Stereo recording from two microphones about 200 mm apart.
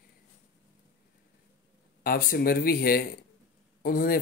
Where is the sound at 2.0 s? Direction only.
50° left (ahead or behind).